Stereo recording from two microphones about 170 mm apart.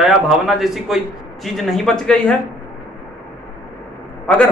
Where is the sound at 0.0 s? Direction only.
Centre (ahead or behind).